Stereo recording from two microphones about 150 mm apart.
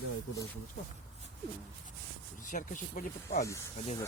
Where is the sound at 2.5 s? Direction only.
60° left (ahead or behind).